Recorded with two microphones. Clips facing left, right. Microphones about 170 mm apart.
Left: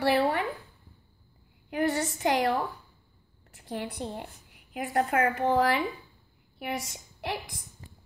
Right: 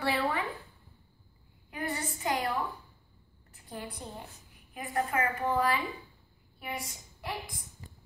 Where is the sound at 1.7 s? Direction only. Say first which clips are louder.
Left 8 dB; 80° left.